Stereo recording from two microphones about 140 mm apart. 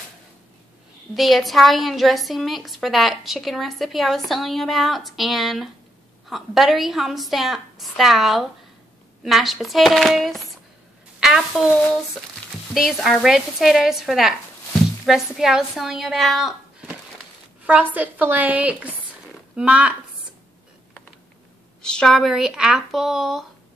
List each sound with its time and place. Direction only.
1.1 s a woman's voice: centre (ahead or behind)
12.7 s a woman's voice: centre (ahead or behind)
17.6 s a woman's voice: 10° right (ahead or behind)
21.8 s a woman's voice: 5° left (ahead or behind)